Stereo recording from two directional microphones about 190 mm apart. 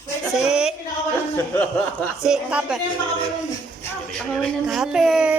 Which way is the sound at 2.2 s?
5° right (ahead or behind).